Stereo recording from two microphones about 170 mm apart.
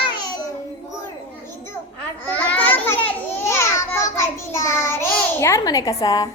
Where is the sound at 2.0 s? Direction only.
10° left (ahead or behind).